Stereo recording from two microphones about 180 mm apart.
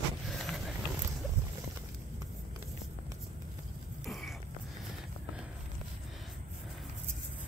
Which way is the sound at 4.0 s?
Centre (ahead or behind).